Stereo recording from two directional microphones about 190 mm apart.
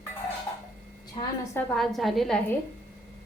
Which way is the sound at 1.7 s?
Centre (ahead or behind).